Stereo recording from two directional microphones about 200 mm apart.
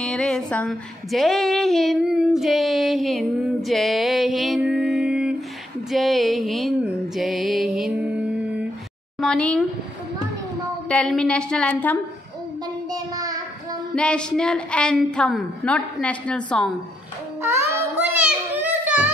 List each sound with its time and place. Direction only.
0.0 s female singing: centre (ahead or behind)
5.9 s music: centre (ahead or behind)
9.2 s a woman's voice: 5° left (ahead or behind)
10.9 s a woman's voice: 5° left (ahead or behind)
12.9 s child singing: 20° right (ahead or behind)
13.9 s a woman's voice: 5° left (ahead or behind)
18.1 s a sound: 10° right (ahead or behind)